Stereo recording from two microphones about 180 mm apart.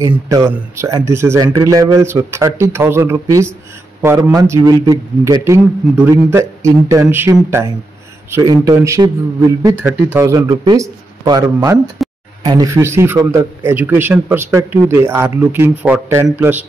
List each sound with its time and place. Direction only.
0.3 s a man's voice: 15° right (ahead or behind)